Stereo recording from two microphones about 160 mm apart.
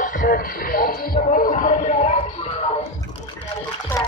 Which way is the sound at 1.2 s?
50° left (ahead or behind).